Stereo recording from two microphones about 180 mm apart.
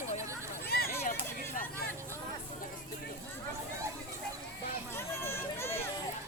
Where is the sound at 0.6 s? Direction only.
60° left (ahead or behind).